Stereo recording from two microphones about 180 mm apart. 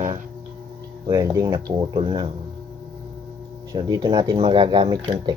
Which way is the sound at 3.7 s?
20° right (ahead or behind).